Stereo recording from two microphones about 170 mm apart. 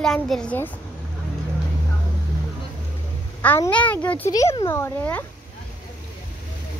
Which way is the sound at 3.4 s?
10° left (ahead or behind).